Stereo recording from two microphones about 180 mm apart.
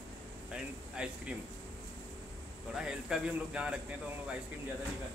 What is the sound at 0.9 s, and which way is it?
Speech, 5° right (ahead or behind).